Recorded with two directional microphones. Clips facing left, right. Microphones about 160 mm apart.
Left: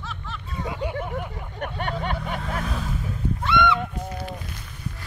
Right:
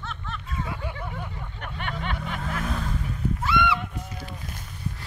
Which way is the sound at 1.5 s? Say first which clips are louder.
Left 6 dB; 40° left (ahead or behind).